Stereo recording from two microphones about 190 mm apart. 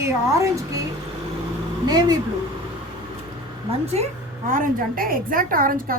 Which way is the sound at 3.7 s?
35° right (ahead or behind).